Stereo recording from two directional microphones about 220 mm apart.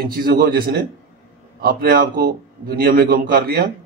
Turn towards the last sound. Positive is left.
turn(degrees=-45)  # may be behind; listen again after turning